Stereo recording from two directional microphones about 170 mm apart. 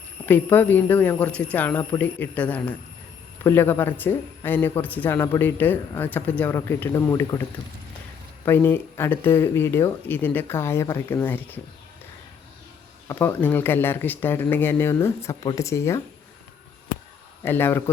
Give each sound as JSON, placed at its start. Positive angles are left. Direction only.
{"t": 0.3, "sound": "a man's voice", "side_deg": 10}
{"t": 8.4, "sound": "a man's voice", "side_deg": 10}
{"t": 13.1, "sound": "a man's voice", "side_deg": 15}
{"t": 17.4, "sound": "a man's voice", "side_deg": 15}